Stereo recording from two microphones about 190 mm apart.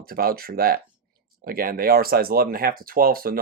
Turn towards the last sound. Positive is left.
turn(degrees=-50)  # may be behind; listen again after turning